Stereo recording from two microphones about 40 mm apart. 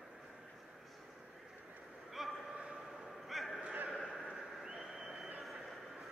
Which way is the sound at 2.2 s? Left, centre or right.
Centre.